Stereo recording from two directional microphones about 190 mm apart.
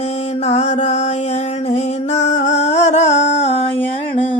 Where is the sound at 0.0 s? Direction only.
35° left (ahead or behind).